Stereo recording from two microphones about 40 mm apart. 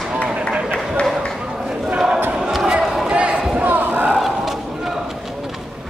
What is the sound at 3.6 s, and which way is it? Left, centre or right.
Slam, right.